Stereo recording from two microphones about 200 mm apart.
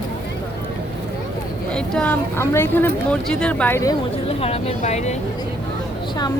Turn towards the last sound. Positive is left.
turn(degrees=35)  # may be behind; listen again after turning